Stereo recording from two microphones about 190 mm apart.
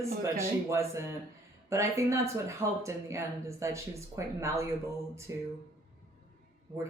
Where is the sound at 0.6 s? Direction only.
15° right (ahead or behind).